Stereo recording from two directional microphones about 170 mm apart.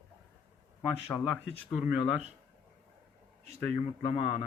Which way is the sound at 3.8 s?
35° left (ahead or behind).